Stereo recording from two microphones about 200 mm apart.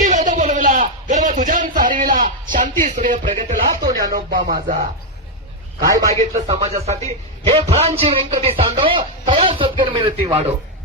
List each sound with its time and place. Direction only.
0.0 s a sound: 40° right (ahead or behind)
3.8 s speech: 20° right (ahead or behind)
4.1 s music: 45° right (ahead or behind)
5.8 s a man's voice: 15° right (ahead or behind)
6.1 s speech: 30° right (ahead or behind)